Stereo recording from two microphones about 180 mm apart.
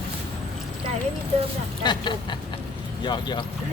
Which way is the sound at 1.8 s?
25° left (ahead or behind).